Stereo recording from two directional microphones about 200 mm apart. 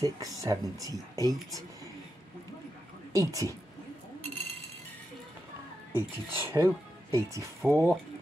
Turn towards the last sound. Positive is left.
turn(degrees=-15)  # may be behind; listen again after turning